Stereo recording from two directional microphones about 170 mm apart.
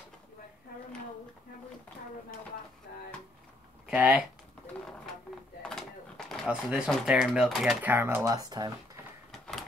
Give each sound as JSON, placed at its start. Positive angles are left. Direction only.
{"t": 3.8, "sound": "speech", "side_deg": -5}
{"t": 5.6, "sound": "speech", "side_deg": 5}
{"t": 7.9, "sound": "speech", "side_deg": -15}
{"t": 9.3, "sound": "door", "side_deg": 0}